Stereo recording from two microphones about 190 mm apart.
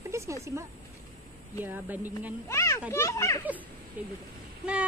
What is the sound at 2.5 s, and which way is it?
Speech, 15° left (ahead or behind).